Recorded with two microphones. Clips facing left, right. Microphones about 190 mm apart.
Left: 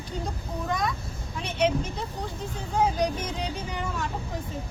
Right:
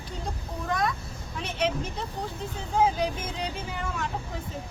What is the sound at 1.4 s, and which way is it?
Speech, centre (ahead or behind).